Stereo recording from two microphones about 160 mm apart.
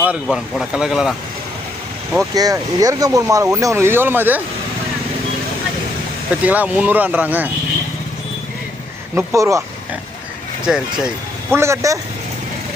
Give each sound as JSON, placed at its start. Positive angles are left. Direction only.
{"t": 0.0, "sound": "speech", "side_deg": -5}
{"t": 2.3, "sound": "speech", "side_deg": -25}
{"t": 6.4, "sound": "speech", "side_deg": -10}
{"t": 9.1, "sound": "speech", "side_deg": -20}
{"t": 10.7, "sound": "speech", "side_deg": -5}
{"t": 11.5, "sound": "speech", "side_deg": -15}